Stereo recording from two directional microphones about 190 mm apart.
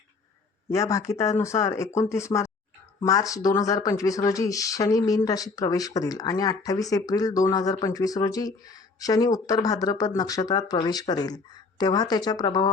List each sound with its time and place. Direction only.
0.7 s speech: 15° left (ahead or behind)